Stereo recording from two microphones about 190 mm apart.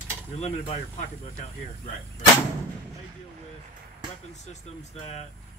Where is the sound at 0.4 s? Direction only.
35° left (ahead or behind).